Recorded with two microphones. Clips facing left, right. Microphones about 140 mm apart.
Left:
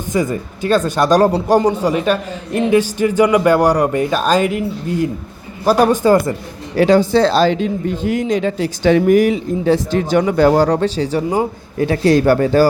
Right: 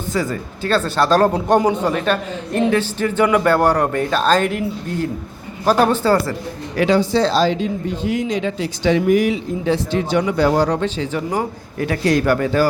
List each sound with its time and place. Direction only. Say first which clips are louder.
0.1 s a man's voice: left 4 dB; 15° left (ahead or behind)
6.7 s a man's voice: left 4 dB; 45° left (ahead or behind)